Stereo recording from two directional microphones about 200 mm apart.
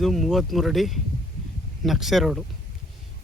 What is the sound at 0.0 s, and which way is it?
Speech, centre (ahead or behind).